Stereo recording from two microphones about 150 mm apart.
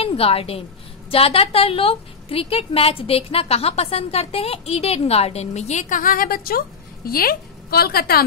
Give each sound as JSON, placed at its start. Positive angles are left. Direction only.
{"t": 0.0, "sound": "a woman's voice", "side_deg": 40}